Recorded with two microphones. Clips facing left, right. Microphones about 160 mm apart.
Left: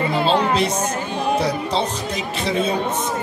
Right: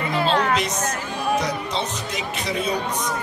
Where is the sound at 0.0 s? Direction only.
30° left (ahead or behind).